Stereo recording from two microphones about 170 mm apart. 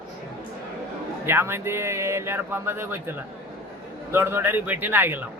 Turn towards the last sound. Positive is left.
turn(degrees=-10)  # may be behind; listen again after turning